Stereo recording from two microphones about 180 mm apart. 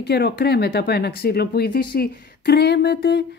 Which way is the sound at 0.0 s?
65° left (ahead or behind).